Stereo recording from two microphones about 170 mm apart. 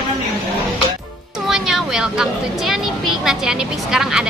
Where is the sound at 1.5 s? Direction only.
5° right (ahead or behind).